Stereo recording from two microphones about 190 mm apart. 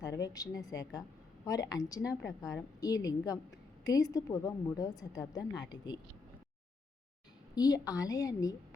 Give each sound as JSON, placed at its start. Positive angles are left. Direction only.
{"t": 0.0, "sound": "a woman's voice", "side_deg": 20}
{"t": 7.5, "sound": "a woman's voice", "side_deg": 20}